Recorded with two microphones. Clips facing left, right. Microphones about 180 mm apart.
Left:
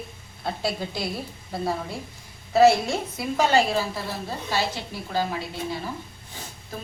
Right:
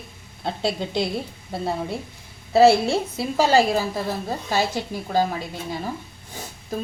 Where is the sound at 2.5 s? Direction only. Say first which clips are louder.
Right 2 dB; 30° right (ahead or behind).